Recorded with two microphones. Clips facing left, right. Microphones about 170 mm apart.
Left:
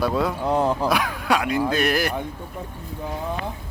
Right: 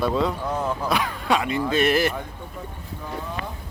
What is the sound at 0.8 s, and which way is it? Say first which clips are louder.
Speech: left 1 dB; centre (ahead or behind).